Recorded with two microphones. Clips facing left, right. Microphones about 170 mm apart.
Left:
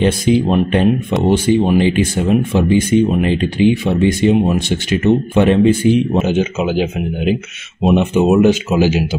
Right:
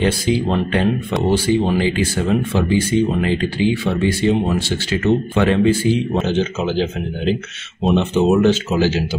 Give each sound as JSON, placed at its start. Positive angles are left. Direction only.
{"t": 0.0, "sound": "speech", "side_deg": 20}